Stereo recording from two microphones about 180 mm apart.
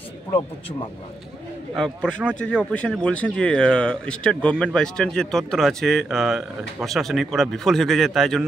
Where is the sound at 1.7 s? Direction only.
5° left (ahead or behind).